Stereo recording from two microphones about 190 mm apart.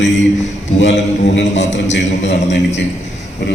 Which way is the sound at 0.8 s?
70° left (ahead or behind).